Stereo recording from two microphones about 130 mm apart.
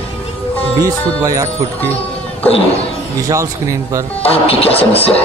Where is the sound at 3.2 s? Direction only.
25° right (ahead or behind).